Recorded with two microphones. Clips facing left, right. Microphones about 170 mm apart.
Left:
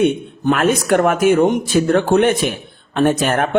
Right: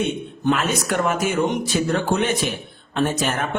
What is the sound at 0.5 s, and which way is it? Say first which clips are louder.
A man's voice: left 9 dB; 55° left (ahead or behind).